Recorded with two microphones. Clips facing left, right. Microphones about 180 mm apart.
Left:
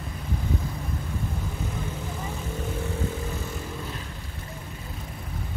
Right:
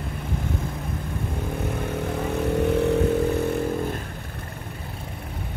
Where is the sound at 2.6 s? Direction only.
65° right (ahead or behind).